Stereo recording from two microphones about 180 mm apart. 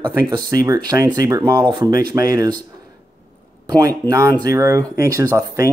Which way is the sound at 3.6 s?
20° right (ahead or behind).